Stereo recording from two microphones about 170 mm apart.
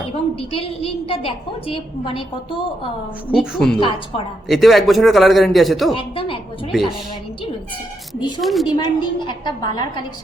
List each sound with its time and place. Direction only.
0.3 s a woman's voice: 35° left (ahead or behind)
3.3 s a man's voice: centre (ahead or behind)
3.8 s a woman's voice: 30° left (ahead or behind)
4.4 s a man's voice: centre (ahead or behind)
6.0 s a woman's voice: 30° left (ahead or behind)
6.7 s a woman's voice: centre (ahead or behind)
8.4 s a man's voice: centre (ahead or behind)
8.7 s a woman's voice: 25° left (ahead or behind)